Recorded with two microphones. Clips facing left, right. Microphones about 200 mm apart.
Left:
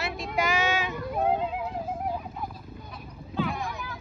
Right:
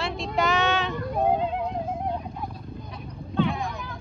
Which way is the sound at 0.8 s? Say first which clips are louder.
Right 2 dB; 5° left (ahead or behind).